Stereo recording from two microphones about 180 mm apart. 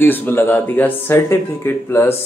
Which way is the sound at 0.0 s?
10° left (ahead or behind).